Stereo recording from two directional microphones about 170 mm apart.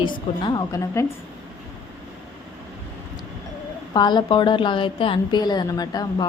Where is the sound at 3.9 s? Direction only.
25° left (ahead or behind).